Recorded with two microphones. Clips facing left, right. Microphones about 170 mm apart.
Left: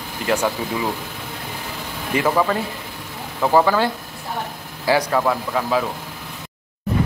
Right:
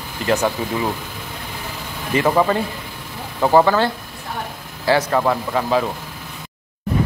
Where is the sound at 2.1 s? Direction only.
10° left (ahead or behind).